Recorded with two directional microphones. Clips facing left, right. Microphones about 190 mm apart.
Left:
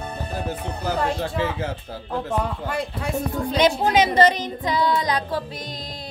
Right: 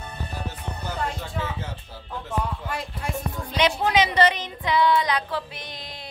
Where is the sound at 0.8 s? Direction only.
90° left.